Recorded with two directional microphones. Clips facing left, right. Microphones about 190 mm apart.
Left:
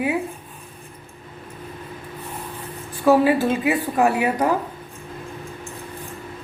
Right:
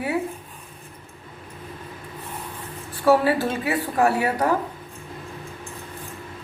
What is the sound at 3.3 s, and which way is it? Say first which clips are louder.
Speech: left 4 dB; 15° left (ahead or behind).